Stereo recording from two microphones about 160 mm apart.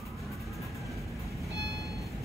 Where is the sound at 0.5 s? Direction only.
Centre (ahead or behind).